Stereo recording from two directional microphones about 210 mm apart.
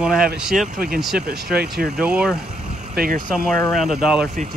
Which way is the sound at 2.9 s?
45° right (ahead or behind).